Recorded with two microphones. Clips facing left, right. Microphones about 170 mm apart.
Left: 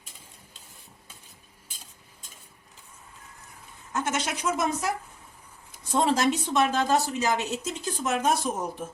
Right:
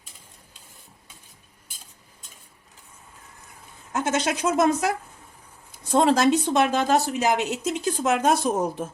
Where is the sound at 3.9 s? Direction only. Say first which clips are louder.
Right 5 dB; 90° right.